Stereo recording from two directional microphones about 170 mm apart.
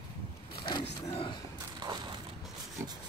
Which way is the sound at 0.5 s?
30° left (ahead or behind).